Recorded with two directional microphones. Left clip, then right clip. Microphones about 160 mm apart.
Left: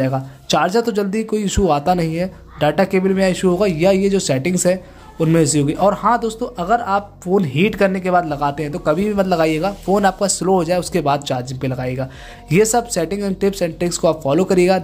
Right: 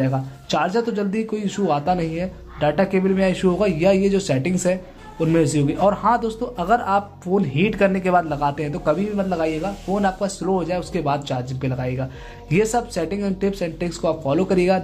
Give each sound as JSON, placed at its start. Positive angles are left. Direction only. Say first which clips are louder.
{"t": 0.0, "sound": "speech", "louder": "left 3 dB", "side_deg": 30}
{"t": 9.0, "sound": "speech", "louder": "left 6 dB", "side_deg": 40}